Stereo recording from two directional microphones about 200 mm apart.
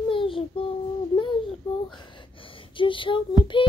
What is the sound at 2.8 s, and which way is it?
Female singing, 25° left (ahead or behind).